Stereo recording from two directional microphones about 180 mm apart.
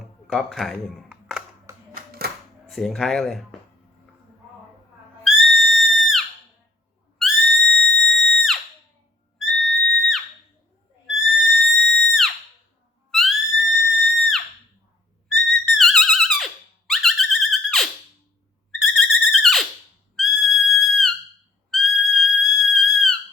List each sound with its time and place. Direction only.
0.3 s a sound: centre (ahead or behind)
2.0 s typewriter: 55° right (ahead or behind)
2.6 s speech: centre (ahead or behind)
5.2 s music: centre (ahead or behind)
11.0 s a sound: centre (ahead or behind)
13.1 s music: centre (ahead or behind)
18.8 s a sound: centre (ahead or behind)
20.1 s music: centre (ahead or behind)
21.7 s whistle: centre (ahead or behind)